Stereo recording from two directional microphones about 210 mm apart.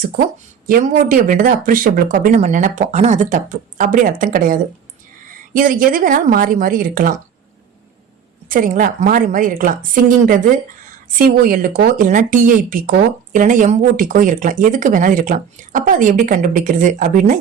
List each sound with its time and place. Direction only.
0.7 s speech: 40° right (ahead or behind)
8.4 s speech: 40° right (ahead or behind)